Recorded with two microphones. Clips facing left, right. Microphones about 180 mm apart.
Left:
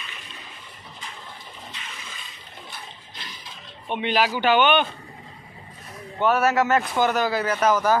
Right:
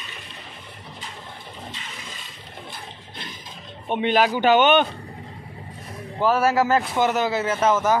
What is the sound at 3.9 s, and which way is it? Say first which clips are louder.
Speech: right 3 dB; 45° right (ahead or behind).